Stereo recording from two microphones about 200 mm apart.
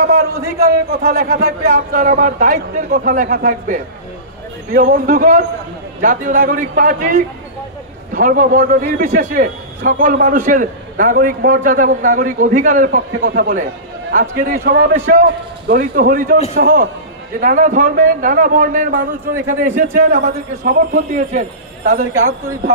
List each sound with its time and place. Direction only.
0.6 s a man's voice: 50° right (ahead or behind)
4.7 s a man's voice: 45° right (ahead or behind)